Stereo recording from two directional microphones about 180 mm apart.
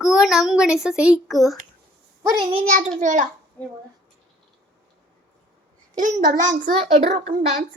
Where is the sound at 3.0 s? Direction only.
45° right (ahead or behind).